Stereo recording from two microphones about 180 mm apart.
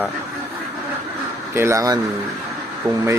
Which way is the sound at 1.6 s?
15° right (ahead or behind).